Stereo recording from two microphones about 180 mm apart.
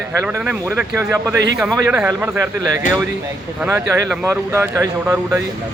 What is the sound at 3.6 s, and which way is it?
Speech, 15° right (ahead or behind).